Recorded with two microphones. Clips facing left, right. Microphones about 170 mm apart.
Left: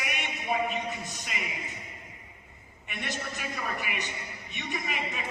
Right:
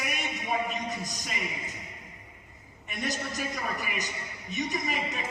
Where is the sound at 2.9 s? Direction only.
40° right (ahead or behind).